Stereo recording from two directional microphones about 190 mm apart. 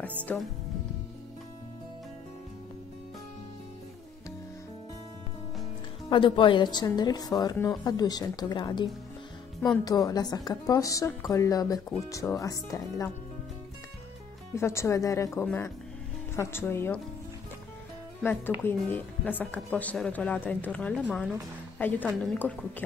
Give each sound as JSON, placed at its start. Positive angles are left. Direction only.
{"t": 0.2, "sound": "speech", "side_deg": 5}
{"t": 6.0, "sound": "a woman's voice", "side_deg": 25}
{"t": 14.5, "sound": "speech", "side_deg": 15}
{"t": 18.2, "sound": "speech", "side_deg": 10}